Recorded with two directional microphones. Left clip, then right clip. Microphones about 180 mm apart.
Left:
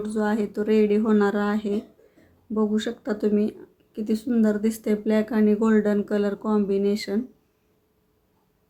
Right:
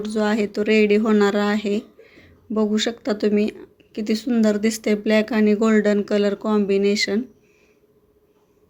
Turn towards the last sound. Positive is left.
turn(degrees=-5)  # may be behind; listen again after turning